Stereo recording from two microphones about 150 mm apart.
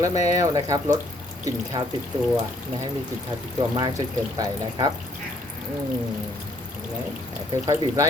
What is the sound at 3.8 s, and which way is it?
Speech, 30° right (ahead or behind).